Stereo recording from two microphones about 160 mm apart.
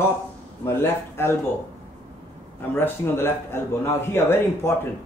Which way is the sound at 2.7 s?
15° left (ahead or behind).